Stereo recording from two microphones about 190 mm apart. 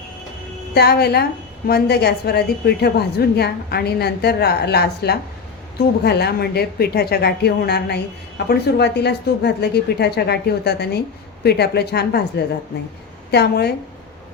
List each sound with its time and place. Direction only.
0.7 s a woman's voice: 55° left (ahead or behind)
13.3 s a woman's voice: 60° left (ahead or behind)